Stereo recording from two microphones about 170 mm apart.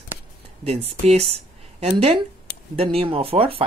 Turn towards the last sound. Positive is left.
turn(degrees=-30)  # may be behind; listen again after turning